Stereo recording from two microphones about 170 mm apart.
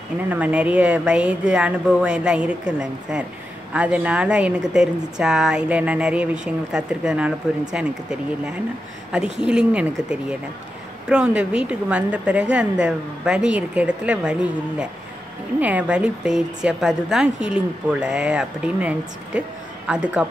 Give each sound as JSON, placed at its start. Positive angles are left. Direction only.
{"t": 0.3, "sound": "a woman's voice", "side_deg": -10}